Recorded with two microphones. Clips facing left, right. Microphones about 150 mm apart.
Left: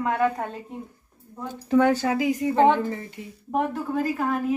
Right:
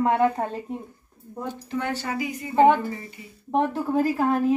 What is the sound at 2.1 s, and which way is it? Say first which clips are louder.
Speech: left 7 dB; 90° left.